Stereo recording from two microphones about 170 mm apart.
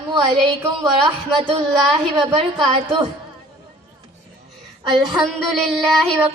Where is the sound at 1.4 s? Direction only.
30° right (ahead or behind).